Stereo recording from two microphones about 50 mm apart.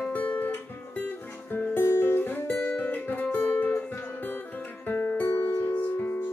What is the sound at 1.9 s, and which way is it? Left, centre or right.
Guitar, left.